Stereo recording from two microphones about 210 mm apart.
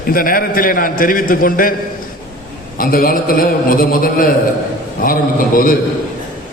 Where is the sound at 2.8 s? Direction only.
45° left (ahead or behind).